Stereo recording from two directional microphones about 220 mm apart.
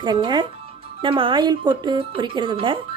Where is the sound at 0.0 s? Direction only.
20° right (ahead or behind).